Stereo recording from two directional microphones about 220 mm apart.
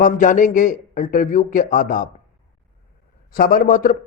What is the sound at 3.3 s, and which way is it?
Speech, 40° left (ahead or behind).